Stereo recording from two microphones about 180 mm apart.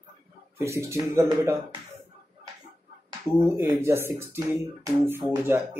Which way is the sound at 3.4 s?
15° right (ahead or behind).